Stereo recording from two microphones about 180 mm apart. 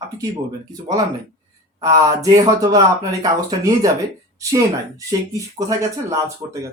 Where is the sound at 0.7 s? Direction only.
20° right (ahead or behind).